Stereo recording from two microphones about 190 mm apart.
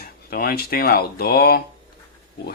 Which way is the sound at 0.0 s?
55° left (ahead or behind).